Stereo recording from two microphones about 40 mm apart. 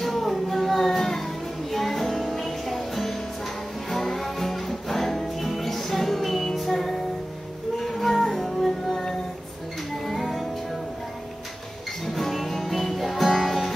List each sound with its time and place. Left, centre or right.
0.0 s child singing: centre
3.9 s music: centre
12.1 s music: centre